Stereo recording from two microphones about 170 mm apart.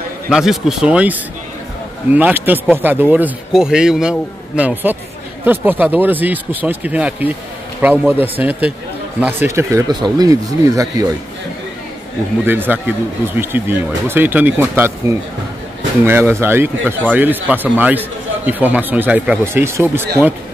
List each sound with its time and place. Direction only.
0.3 s a man's voice: centre (ahead or behind); by 11.1 s 20° right (ahead or behind)
12.4 s a man's voice: 10° right (ahead or behind)